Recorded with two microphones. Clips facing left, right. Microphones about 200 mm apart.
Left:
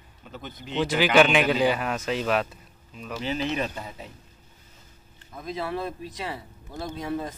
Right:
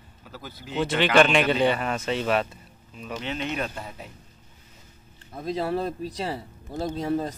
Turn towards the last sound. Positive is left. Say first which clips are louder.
# right 4 dB
turn(degrees=-35)  # may be behind; listen again after turning